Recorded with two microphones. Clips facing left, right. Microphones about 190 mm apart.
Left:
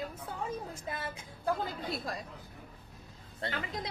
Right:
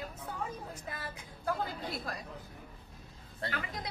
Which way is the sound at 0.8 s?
25° left (ahead or behind).